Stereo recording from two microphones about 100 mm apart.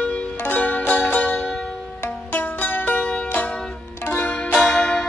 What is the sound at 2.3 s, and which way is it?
Music, 20° left (ahead or behind).